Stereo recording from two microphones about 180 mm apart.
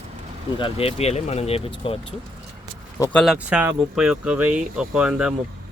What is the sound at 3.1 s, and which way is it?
Speech, centre (ahead or behind).